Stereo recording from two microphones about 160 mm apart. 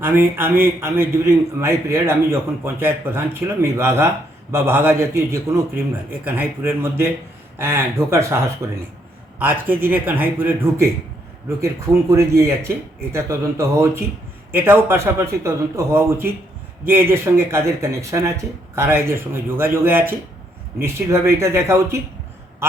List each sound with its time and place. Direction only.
0.0 s a man's voice: 15° right (ahead or behind)